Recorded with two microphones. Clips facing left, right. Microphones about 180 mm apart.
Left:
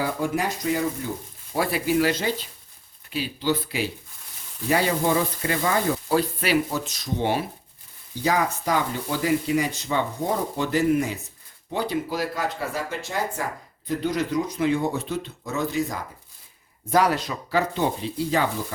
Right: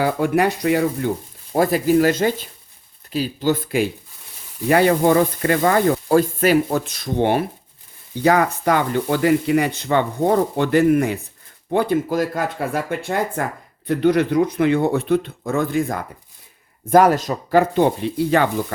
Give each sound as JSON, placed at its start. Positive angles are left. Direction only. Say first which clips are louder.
{"t": 0.0, "sound": "speech", "louder": "right 7 dB", "side_deg": -65}
{"t": 1.5, "sound": "speech", "louder": "right 7 dB", "side_deg": -45}